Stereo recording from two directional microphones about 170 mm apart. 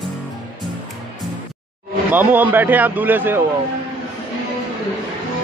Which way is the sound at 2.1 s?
10° right (ahead or behind).